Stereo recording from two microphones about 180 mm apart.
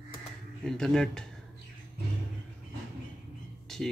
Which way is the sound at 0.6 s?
5° left (ahead or behind).